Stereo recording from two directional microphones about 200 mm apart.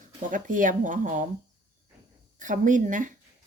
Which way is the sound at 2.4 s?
40° right (ahead or behind).